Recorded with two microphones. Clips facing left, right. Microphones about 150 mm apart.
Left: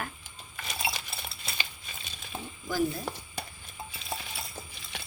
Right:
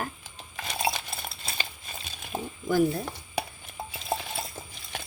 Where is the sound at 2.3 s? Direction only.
45° right (ahead or behind).